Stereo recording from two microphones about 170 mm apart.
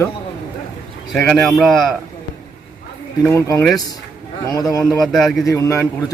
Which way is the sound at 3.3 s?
15° left (ahead or behind).